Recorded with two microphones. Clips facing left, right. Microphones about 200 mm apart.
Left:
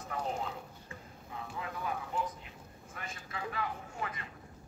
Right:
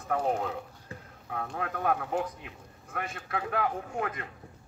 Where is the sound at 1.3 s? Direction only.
70° right (ahead or behind).